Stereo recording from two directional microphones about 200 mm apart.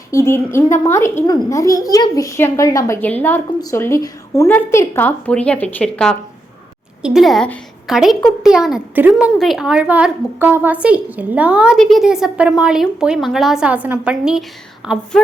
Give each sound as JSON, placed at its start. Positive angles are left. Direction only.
{"t": 0.1, "sound": "a woman's voice", "side_deg": 15}